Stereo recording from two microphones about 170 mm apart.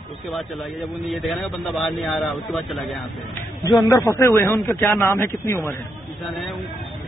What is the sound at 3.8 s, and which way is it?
Speech, 20° left (ahead or behind).